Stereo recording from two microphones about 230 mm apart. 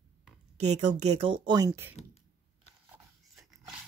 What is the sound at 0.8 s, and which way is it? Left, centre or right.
Speech, right.